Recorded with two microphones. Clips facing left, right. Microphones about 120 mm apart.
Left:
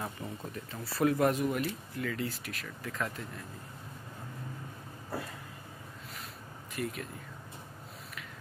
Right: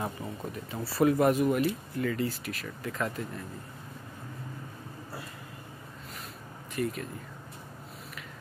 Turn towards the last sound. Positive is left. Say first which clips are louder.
# right 5 dB
turn(degrees=0)  # may be behind; listen again after turning